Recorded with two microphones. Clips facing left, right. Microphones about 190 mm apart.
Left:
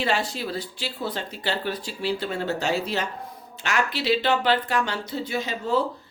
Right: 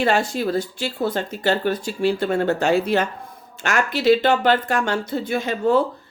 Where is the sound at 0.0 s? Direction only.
50° right (ahead or behind).